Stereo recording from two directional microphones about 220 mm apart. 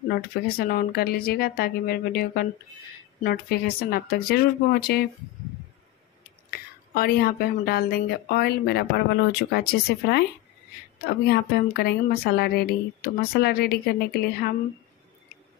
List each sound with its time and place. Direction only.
0.1 s a woman's voice: 45° left (ahead or behind)
6.5 s a woman's voice: 40° left (ahead or behind)
11.1 s a woman's voice: 45° left (ahead or behind)